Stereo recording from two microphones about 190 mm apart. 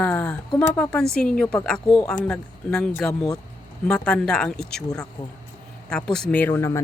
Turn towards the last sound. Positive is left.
turn(degrees=15)  # may be behind; listen again after turning